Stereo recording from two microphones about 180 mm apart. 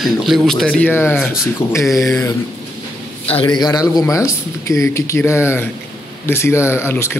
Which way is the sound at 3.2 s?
30° left (ahead or behind).